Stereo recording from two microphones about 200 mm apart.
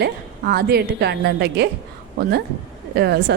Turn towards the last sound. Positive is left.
turn(degrees=-55)  # may be behind; listen again after turning